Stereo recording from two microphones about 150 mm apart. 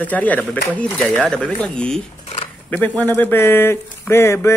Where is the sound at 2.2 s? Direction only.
40° left (ahead or behind).